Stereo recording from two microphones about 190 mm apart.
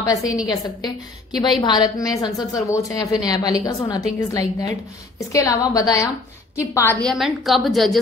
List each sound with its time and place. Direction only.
0.3 s a woman's voice: 20° left (ahead or behind); by 8.0 s centre (ahead or behind)